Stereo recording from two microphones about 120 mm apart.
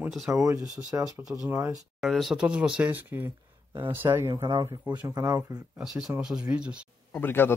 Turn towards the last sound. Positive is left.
turn(degrees=15)  # may be behind; listen again after turning